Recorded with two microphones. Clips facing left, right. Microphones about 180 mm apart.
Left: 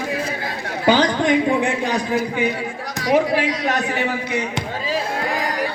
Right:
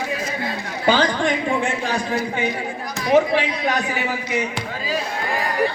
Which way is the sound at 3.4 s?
90° left.